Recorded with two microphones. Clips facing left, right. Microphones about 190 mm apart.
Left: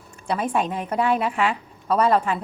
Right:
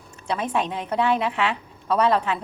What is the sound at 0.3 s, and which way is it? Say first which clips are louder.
A woman's voice: left 2 dB; 5° left (ahead or behind).